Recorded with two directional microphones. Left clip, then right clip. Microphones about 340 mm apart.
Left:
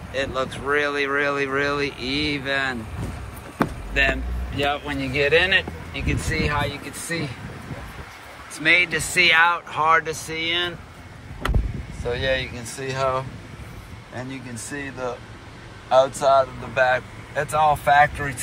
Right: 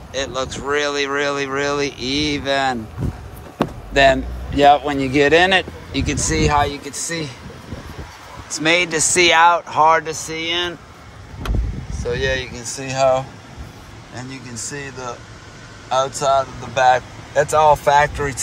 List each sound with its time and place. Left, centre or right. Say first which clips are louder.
0.1 s speech: right 2 dB; centre
8.5 s speech: right 2 dB; centre
12.1 s speech: right 2 dB; centre